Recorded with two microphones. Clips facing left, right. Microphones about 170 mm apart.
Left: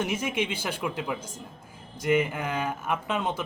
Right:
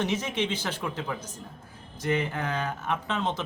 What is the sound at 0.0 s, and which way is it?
Speech, 10° left (ahead or behind).